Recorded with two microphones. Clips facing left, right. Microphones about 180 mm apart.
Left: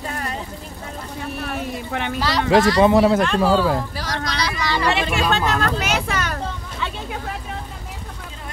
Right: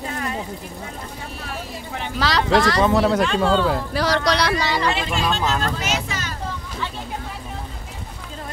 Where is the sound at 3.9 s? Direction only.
70° right (ahead or behind).